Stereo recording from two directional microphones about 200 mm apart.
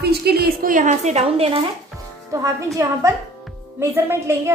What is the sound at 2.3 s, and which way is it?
A woman's voice, 15° right (ahead or behind).